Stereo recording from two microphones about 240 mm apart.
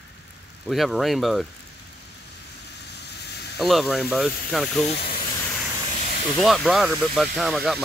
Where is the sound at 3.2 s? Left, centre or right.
Left.